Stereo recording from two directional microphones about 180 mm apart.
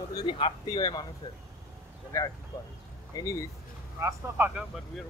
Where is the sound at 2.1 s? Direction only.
15° left (ahead or behind).